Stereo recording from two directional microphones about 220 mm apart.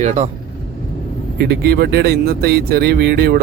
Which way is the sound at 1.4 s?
45° right (ahead or behind).